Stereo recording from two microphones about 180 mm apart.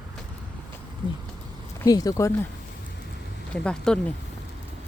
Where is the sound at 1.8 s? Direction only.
20° left (ahead or behind).